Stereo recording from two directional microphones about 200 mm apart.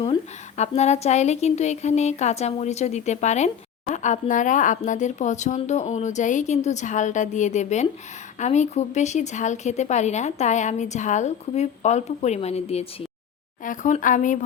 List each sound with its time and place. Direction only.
0.0 s a woman's voice: 30° left (ahead or behind)